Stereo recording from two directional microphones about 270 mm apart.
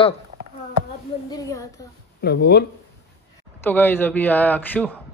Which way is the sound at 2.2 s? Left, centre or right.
Left.